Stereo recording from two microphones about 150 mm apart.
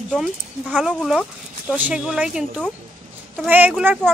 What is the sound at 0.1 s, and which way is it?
Speech, centre (ahead or behind).